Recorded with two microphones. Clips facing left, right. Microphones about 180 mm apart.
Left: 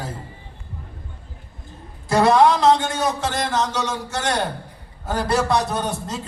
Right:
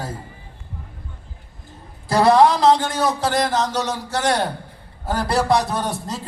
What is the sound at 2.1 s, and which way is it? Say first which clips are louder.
A man's voice: right 1 dB; 35° right (ahead or behind).